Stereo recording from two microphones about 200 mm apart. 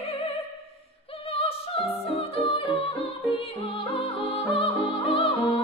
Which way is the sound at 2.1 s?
30° left (ahead or behind).